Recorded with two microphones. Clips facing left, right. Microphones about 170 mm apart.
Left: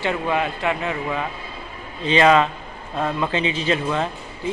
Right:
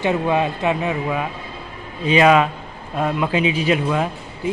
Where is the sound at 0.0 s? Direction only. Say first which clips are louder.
Right 4 dB; 20° right (ahead or behind).